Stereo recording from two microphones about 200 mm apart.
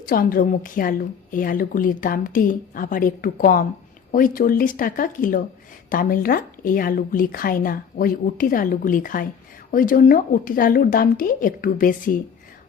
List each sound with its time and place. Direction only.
0.1 s a woman's voice: 45° left (ahead or behind)